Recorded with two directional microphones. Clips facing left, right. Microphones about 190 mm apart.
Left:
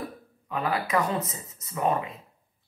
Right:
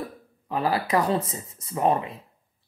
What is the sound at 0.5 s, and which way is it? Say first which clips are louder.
Speech: right 3 dB; 35° right (ahead or behind).